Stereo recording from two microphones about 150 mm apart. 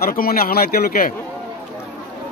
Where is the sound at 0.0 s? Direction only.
75° left (ahead or behind).